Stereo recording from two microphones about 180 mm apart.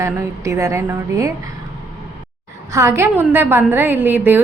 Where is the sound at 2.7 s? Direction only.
15° right (ahead or behind).